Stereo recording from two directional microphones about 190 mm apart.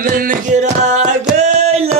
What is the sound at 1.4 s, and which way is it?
Music, 35° right (ahead or behind).